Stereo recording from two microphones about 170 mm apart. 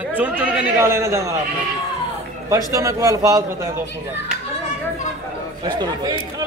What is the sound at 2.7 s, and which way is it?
A man's voice, 20° right (ahead or behind).